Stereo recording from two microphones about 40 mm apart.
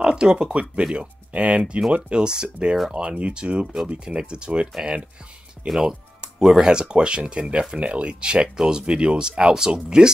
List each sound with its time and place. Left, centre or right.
0.0 s speech: right
5.7 s music: centre
6.6 s speech: right